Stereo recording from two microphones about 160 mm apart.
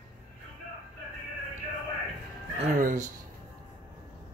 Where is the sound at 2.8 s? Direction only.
55° right (ahead or behind).